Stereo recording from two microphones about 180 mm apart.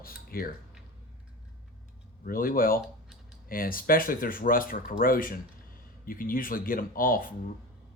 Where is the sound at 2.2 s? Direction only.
55° left (ahead or behind).